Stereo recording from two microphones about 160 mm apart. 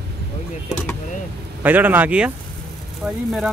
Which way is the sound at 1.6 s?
10° right (ahead or behind).